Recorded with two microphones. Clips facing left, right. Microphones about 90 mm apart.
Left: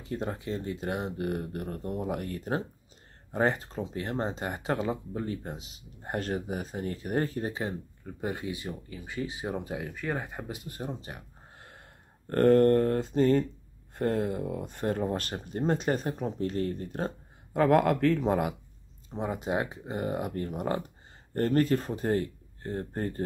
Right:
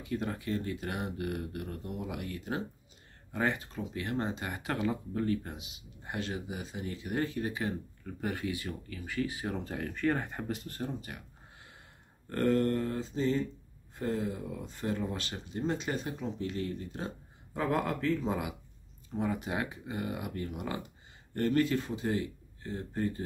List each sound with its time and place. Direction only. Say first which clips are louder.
0.0 s speech: left 1 dB; 30° left (ahead or behind)
11.5 s a sound: left 5 dB; 45° left (ahead or behind)
12.3 s speech: left 8 dB; 50° left (ahead or behind)
19.0 s speech: left 2 dB; 25° left (ahead or behind); by 23.2 s 50° left (ahead or behind)